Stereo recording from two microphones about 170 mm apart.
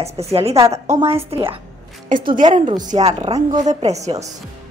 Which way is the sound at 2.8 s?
40° right (ahead or behind).